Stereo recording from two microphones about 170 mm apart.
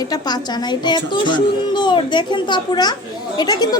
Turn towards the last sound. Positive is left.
turn(degrees=25)  # may be behind; listen again after turning